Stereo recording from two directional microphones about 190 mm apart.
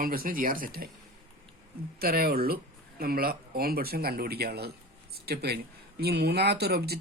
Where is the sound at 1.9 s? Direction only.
50° right (ahead or behind).